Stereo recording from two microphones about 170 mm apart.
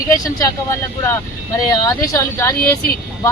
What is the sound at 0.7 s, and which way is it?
Speech, 15° left (ahead or behind).